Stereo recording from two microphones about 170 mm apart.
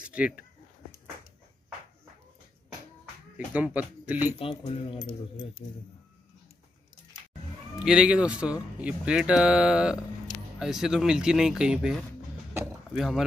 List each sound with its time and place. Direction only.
0.0 s speech: 10° right (ahead or behind)
3.3 s speech: 10° right (ahead or behind)
4.4 s speech: 30° left (ahead or behind)
7.8 s speech: 5° right (ahead or behind)